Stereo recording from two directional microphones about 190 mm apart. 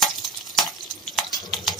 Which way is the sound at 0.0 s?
Centre (ahead or behind).